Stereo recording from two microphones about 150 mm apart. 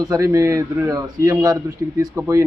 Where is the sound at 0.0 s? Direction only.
20° right (ahead or behind).